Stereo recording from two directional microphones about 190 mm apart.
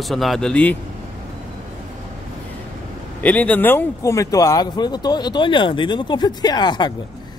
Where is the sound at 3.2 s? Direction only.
10° left (ahead or behind).